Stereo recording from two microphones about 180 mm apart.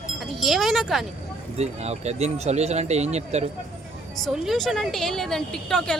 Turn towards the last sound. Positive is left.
turn(degrees=5)  # may be behind; listen again after turning